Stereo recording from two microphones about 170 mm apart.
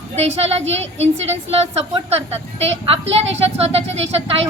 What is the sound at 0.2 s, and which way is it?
A woman's voice, 40° right (ahead or behind).